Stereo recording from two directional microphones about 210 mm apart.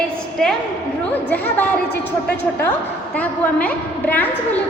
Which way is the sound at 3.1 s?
5° left (ahead or behind).